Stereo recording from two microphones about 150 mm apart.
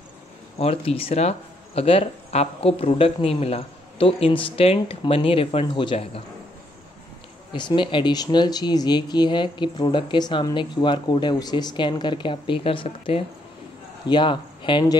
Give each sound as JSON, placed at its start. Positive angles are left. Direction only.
{"t": 0.6, "sound": "speech", "side_deg": 40}
{"t": 7.5, "sound": "speech", "side_deg": 30}